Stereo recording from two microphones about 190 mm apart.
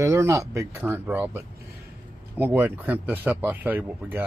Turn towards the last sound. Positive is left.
turn(degrees=-10)  # may be behind; listen again after turning